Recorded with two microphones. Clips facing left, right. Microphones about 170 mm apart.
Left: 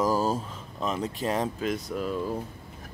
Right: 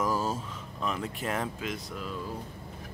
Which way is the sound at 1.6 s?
45° left (ahead or behind).